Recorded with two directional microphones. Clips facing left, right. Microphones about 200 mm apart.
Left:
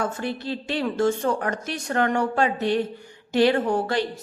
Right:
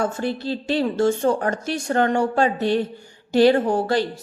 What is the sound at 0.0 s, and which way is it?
A woman's voice, 30° right (ahead or behind).